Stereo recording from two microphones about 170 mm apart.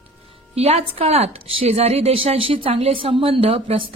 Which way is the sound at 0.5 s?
40° right (ahead or behind).